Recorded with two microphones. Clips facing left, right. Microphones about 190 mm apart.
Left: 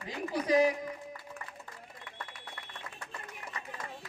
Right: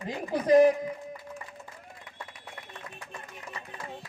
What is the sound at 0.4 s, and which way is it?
Speech, 50° right (ahead or behind).